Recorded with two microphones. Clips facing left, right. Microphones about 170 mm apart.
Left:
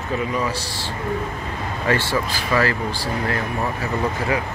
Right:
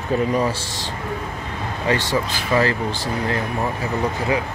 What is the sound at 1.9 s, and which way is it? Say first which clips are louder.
Speech: even; 20° right (ahead or behind).